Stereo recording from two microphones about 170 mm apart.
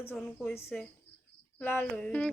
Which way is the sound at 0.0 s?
10° left (ahead or behind).